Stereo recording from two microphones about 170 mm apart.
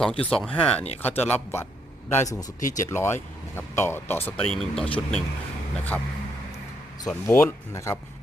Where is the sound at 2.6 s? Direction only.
50° left (ahead or behind).